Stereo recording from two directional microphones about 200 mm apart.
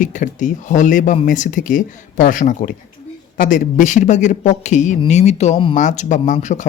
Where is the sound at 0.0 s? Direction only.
40° left (ahead or behind).